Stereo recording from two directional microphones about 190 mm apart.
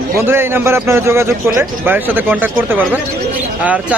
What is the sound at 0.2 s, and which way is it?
A man's voice, 10° right (ahead or behind).